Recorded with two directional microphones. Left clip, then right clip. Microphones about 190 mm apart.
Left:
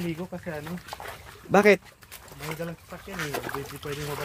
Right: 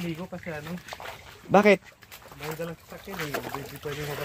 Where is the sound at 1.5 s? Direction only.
10° right (ahead or behind).